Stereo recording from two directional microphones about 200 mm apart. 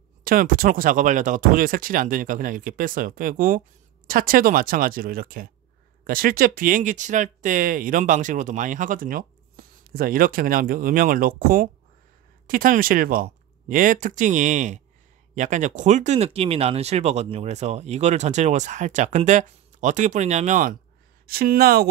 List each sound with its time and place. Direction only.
0.2 s speech: 45° right (ahead or behind)